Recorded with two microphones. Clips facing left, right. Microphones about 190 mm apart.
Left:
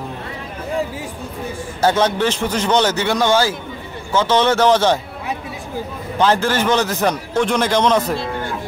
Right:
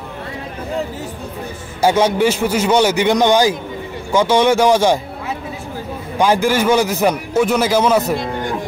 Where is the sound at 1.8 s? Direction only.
10° right (ahead or behind).